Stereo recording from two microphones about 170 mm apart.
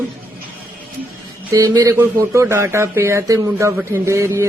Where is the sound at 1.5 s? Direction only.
20° right (ahead or behind).